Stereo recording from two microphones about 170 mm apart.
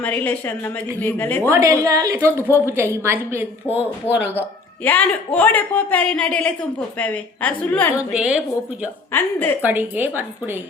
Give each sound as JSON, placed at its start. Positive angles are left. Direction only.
{"t": 0.0, "sound": "a man's voice", "side_deg": 10}
{"t": 1.5, "sound": "a woman's voice", "side_deg": -15}
{"t": 4.0, "sound": "a man's voice", "side_deg": 10}
{"t": 7.9, "sound": "a woman's voice", "side_deg": -5}
{"t": 9.1, "sound": "a man's voice", "side_deg": 10}
{"t": 9.6, "sound": "a woman's voice", "side_deg": -10}